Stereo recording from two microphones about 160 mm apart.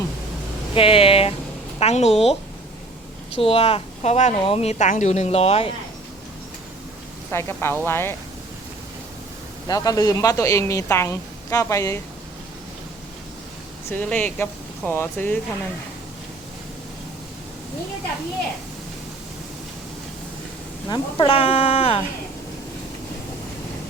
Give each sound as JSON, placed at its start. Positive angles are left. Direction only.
{"t": 0.7, "sound": "speech", "side_deg": 35}
{"t": 3.3, "sound": "speech", "side_deg": 35}
{"t": 7.3, "sound": "speech", "side_deg": 15}
{"t": 9.6, "sound": "a woman's voice", "side_deg": 25}
{"t": 13.9, "sound": "speech", "side_deg": 10}
{"t": 20.9, "sound": "speech", "side_deg": 35}